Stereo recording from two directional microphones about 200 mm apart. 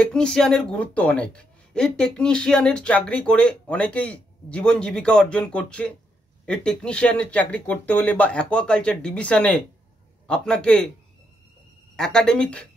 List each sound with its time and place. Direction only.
0.0 s a woman's voice: 5° left (ahead or behind)
12.0 s a woman's voice: 5° left (ahead or behind)